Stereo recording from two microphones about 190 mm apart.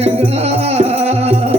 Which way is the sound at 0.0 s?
35° right (ahead or behind).